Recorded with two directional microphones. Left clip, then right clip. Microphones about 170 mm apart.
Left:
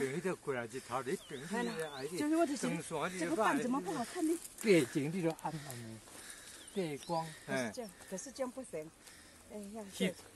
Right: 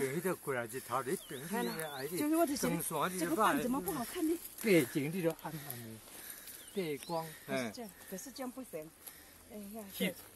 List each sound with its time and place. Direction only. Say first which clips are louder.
0.0 s speech: right 1 dB; 50° right (ahead or behind)
1.4 s speech: even; 10° right (ahead or behind)
1.8 s speech: even; 55° right (ahead or behind)
2.1 s speech: right 1 dB; 15° right (ahead or behind)
2.6 s speech: right 3 dB; 65° right (ahead or behind)
3.6 s speech: even; 5° left (ahead or behind)
5.1 s speech: right 1 dB; 20° left (ahead or behind)
5.5 s speech: left 2 dB; centre (ahead or behind)
6.7 s speech: even; 70° left (ahead or behind)
10.0 s speech: even; 65° left (ahead or behind)